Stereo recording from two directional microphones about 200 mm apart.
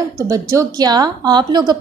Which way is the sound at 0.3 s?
15° right (ahead or behind).